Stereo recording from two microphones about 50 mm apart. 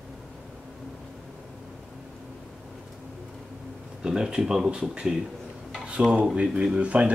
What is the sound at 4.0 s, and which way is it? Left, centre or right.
Speech, centre.